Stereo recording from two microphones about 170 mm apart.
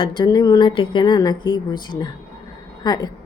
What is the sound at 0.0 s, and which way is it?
A woman's voice, 25° left (ahead or behind).